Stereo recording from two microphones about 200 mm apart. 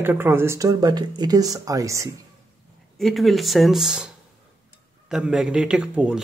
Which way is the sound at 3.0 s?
Centre (ahead or behind).